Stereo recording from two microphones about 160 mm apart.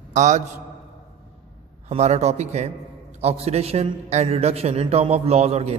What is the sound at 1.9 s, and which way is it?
A man's voice, 45° right (ahead or behind).